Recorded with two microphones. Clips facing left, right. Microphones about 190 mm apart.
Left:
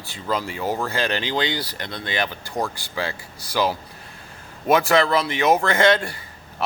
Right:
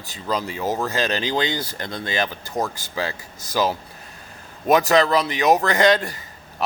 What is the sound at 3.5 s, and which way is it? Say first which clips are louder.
Speech: right 1 dB; 20° right (ahead or behind).